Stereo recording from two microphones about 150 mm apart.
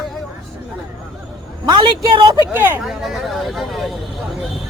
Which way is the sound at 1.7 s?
30° right (ahead or behind).